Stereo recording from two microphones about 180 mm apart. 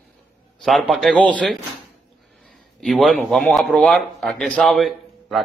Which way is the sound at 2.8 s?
Centre (ahead or behind).